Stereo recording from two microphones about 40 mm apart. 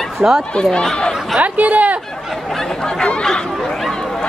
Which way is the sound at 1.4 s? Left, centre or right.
Right.